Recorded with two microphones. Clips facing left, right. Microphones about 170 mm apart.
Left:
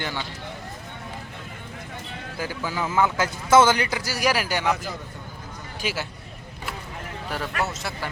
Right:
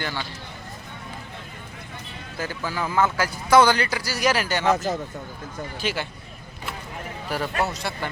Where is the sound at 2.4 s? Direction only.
15° left (ahead or behind).